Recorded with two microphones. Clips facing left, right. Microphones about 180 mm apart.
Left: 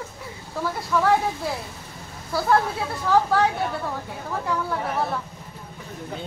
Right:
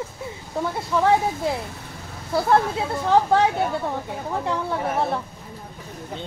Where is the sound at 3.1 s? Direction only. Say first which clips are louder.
Right 2 dB; 20° right (ahead or behind).